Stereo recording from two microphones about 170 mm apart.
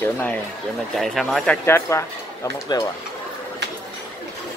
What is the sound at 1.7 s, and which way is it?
Speech, 15° left (ahead or behind).